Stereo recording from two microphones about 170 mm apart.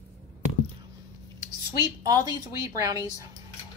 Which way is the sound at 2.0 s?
20° right (ahead or behind).